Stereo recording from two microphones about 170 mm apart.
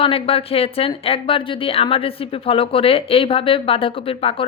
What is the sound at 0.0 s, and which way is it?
Speech, 35° left (ahead or behind).